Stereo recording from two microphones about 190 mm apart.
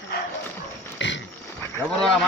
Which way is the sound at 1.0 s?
70° left (ahead or behind).